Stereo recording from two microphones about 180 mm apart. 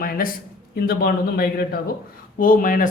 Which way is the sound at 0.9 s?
60° left (ahead or behind).